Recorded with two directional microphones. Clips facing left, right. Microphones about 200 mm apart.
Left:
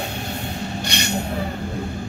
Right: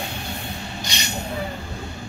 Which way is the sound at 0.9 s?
60° left (ahead or behind).